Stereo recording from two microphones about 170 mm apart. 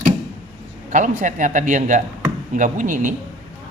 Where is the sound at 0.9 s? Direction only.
50° right (ahead or behind).